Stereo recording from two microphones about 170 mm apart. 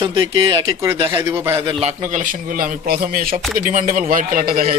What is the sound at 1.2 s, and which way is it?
Speech, 15° right (ahead or behind).